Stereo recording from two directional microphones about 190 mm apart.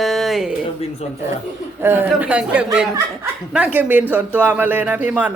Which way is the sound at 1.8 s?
10° right (ahead or behind).